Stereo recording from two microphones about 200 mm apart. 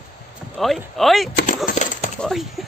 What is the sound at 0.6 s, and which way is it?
Speech, centre (ahead or behind).